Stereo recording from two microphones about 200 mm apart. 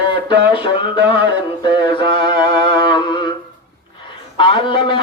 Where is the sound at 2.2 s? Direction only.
20° left (ahead or behind).